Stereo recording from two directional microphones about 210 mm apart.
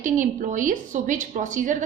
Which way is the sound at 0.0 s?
40° right (ahead or behind).